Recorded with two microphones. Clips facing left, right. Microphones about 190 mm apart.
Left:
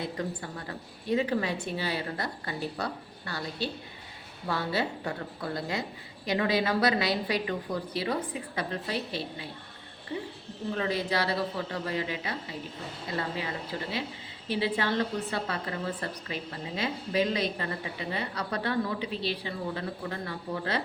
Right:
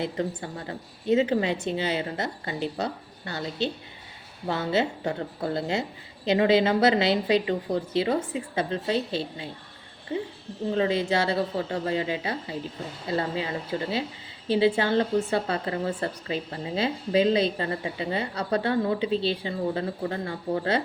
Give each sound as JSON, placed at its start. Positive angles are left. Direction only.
{"t": 0.0, "sound": "a woman's voice", "side_deg": -25}